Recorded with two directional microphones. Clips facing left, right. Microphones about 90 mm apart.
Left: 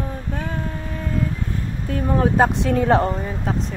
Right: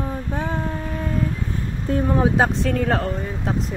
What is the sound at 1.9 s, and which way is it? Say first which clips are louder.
Speech: right 4 dB; 30° right (ahead or behind).